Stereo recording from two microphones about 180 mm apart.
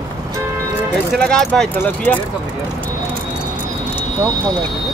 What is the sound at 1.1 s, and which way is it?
Speech, 5° left (ahead or behind).